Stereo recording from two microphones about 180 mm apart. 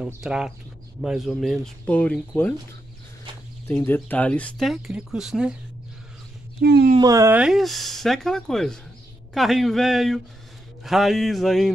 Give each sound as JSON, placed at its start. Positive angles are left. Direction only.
{"t": 0.0, "sound": "speech", "side_deg": -5}
{"t": 3.6, "sound": "speech", "side_deg": 10}
{"t": 6.6, "sound": "speech", "side_deg": -65}
{"t": 7.0, "sound": "speech", "side_deg": -20}